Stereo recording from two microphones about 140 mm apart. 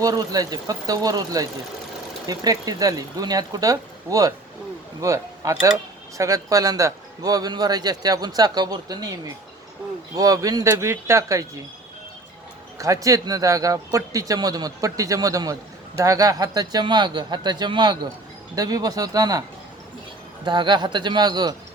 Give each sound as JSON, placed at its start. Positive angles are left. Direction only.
{"t": 0.0, "sound": "a man's voice", "side_deg": -25}
{"t": 12.8, "sound": "a man's voice", "side_deg": -25}